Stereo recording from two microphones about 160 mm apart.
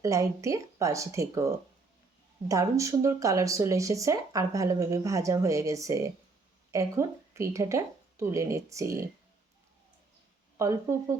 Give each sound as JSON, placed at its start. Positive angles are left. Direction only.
{"t": 0.0, "sound": "speech", "side_deg": -20}
{"t": 10.6, "sound": "speech", "side_deg": -20}